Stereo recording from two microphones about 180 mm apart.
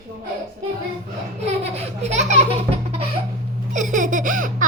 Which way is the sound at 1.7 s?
35° right (ahead or behind).